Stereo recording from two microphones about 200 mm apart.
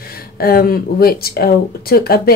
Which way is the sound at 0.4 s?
50° left (ahead or behind).